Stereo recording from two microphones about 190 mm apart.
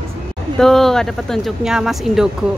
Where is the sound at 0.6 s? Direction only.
Centre (ahead or behind).